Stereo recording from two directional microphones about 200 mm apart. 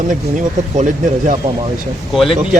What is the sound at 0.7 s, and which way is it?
Speech, 40° right (ahead or behind).